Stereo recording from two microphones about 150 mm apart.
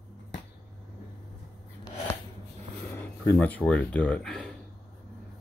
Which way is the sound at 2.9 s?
15° left (ahead or behind).